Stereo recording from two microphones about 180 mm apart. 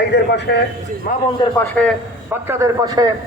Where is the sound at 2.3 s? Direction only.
15° right (ahead or behind).